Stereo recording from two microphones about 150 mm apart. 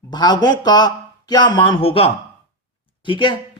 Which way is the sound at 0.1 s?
30° left (ahead or behind).